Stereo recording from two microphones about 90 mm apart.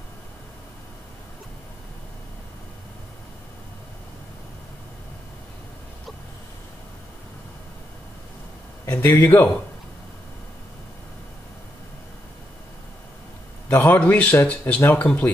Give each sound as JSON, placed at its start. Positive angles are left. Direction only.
{"t": 8.8, "sound": "speech", "side_deg": 30}
{"t": 13.7, "sound": "speech", "side_deg": 25}
{"t": 15.0, "sound": "speech", "side_deg": 15}